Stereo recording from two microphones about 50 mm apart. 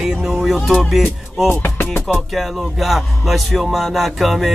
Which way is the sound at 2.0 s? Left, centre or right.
Centre.